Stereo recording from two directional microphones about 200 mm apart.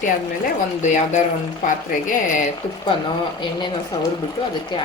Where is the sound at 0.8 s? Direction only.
35° left (ahead or behind).